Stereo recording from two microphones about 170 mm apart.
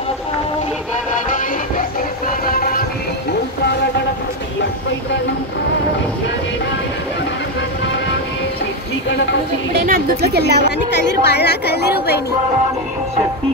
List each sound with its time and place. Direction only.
9.8 s a woman's voice: 65° right (ahead or behind)
10.6 s a woman's voice: 85° left